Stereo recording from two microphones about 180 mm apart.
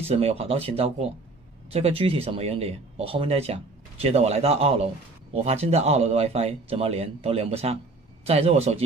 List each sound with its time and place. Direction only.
0.1 s speech: 35° right (ahead or behind)